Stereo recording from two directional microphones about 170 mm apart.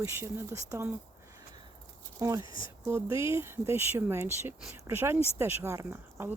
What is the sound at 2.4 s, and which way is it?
Speech, 30° left (ahead or behind).